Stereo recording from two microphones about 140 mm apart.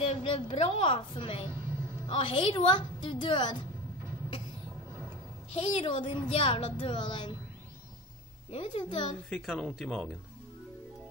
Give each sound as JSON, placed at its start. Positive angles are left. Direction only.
{"t": 0.0, "sound": "speech", "side_deg": 40}
{"t": 5.5, "sound": "speech", "side_deg": 40}
{"t": 8.5, "sound": "speech", "side_deg": 40}
{"t": 9.3, "sound": "speech", "side_deg": 5}